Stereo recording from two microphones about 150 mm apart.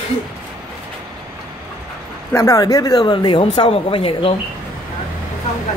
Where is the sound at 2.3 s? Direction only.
20° left (ahead or behind); by 4.3 s 40° left (ahead or behind).